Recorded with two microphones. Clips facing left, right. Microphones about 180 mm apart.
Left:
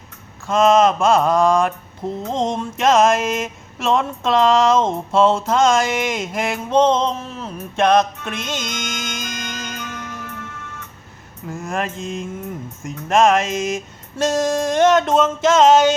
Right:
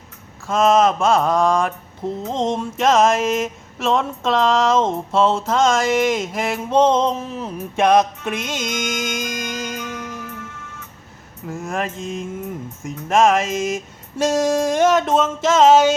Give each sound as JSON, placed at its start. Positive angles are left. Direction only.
{"t": 0.4, "sound": "mantra", "side_deg": -5}
{"t": 10.2, "sound": "music", "side_deg": 60}
{"t": 11.4, "sound": "mantra", "side_deg": -5}